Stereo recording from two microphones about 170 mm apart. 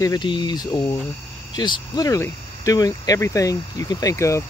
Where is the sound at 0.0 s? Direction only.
25° left (ahead or behind).